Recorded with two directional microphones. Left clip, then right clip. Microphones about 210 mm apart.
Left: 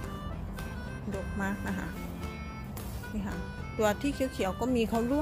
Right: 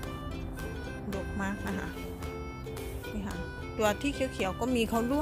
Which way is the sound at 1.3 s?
Centre (ahead or behind).